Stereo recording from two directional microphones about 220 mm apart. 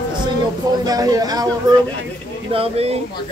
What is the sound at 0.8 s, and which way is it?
Speech, 15° right (ahead or behind).